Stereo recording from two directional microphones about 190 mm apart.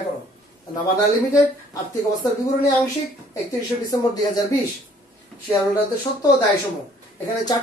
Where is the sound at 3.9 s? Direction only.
20° left (ahead or behind).